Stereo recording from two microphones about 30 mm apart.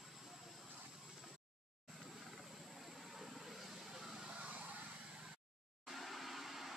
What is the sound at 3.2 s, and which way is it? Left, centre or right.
Vehicle, centre.